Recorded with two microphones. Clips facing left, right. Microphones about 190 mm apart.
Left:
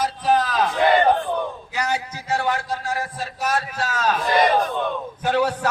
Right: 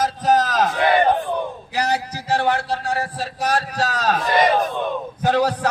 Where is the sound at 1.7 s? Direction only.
35° right (ahead or behind).